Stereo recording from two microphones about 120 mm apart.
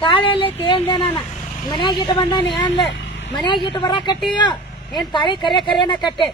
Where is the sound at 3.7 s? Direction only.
35° left (ahead or behind).